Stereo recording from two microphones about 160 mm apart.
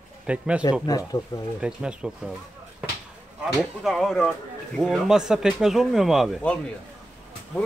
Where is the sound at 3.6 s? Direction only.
Centre (ahead or behind).